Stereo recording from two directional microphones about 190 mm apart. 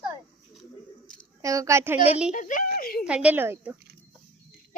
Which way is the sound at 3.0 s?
5° right (ahead or behind).